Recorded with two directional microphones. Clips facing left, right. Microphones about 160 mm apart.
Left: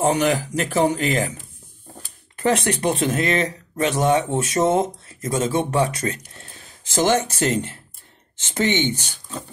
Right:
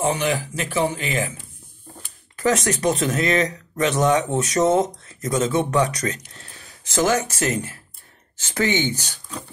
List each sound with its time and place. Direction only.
0.0 s speech: 45° left (ahead or behind)
2.4 s speech: 25° left (ahead or behind)